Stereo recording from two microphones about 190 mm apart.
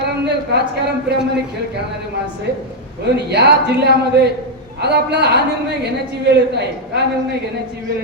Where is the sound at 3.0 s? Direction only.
60° right (ahead or behind).